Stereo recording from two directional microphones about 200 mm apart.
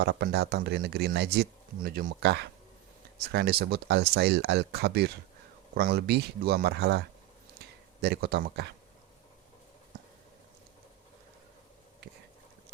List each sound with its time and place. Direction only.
0.0 s speech: 55° right (ahead or behind)
8.0 s speech: 55° right (ahead or behind)